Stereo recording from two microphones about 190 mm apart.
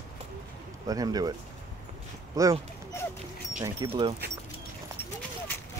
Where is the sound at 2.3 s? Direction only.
15° right (ahead or behind).